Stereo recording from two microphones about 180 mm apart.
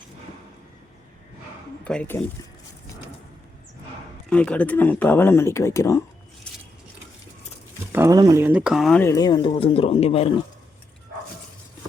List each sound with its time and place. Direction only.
1.8 s speech: 5° left (ahead or behind)
4.3 s speech: 5° left (ahead or behind)
7.9 s speech: 20° right (ahead or behind); by 9.0 s centre (ahead or behind)
9.0 s speech: 15° left (ahead or behind); by 10.3 s 30° left (ahead or behind)